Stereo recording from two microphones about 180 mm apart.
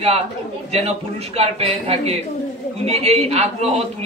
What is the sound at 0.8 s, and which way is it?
A man's voice, 35° right (ahead or behind).